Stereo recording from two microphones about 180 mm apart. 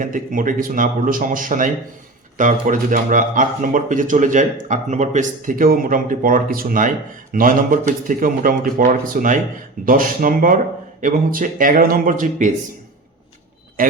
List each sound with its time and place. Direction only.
0.0 s speech: 50° right (ahead or behind)
13.8 s a man's voice: 50° right (ahead or behind)